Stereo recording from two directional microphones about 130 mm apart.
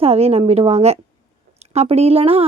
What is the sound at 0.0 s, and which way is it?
A woman's voice, 50° right (ahead or behind).